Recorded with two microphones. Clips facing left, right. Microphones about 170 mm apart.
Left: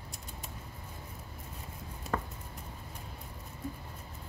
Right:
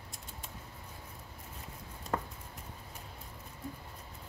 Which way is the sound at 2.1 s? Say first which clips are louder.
Even; 5° right (ahead or behind).